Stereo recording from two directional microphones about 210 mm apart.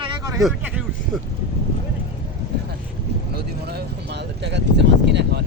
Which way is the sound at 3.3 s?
50° right (ahead or behind).